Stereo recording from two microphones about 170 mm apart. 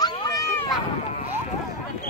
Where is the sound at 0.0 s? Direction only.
20° left (ahead or behind).